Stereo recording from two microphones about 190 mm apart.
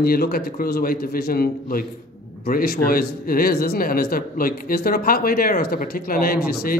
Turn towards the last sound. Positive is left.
turn(degrees=50)  # may be behind; listen again after turning